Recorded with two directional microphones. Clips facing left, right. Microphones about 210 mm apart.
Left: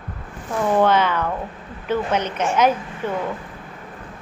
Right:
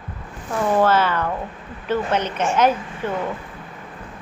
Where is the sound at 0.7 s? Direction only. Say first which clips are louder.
Even; 5° right (ahead or behind).